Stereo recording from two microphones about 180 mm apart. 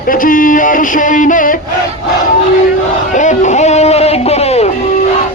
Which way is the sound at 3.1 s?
40° left (ahead or behind).